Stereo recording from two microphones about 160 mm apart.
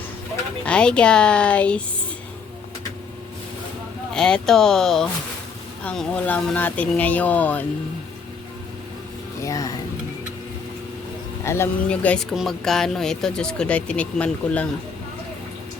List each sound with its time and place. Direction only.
0.6 s speech: 5° left (ahead or behind)
4.1 s speech: 5° left (ahead or behind)
9.4 s a sound: 20° left (ahead or behind)
11.4 s speech: 15° left (ahead or behind)